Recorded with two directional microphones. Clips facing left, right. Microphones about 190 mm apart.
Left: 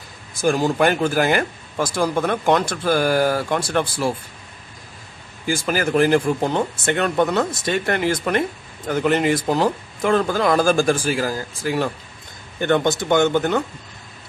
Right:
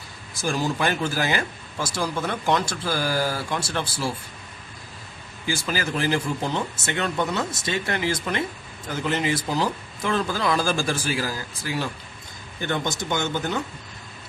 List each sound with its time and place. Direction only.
0.4 s speech: 55° left (ahead or behind)
5.5 s speech: 55° left (ahead or behind)